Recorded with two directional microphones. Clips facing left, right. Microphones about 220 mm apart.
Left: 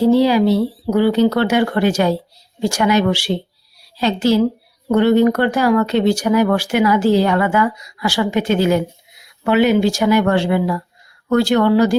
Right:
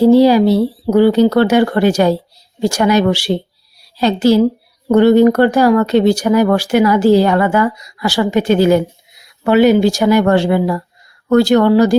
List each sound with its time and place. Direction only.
0.0 s speech: 40° right (ahead or behind)